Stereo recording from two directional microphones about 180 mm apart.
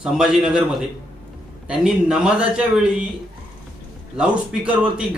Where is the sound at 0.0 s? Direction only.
5° right (ahead or behind).